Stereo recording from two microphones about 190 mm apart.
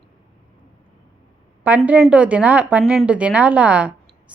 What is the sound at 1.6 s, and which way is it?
A woman's voice, 10° right (ahead or behind).